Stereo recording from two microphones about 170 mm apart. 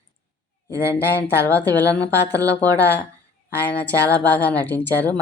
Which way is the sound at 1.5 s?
10° left (ahead or behind).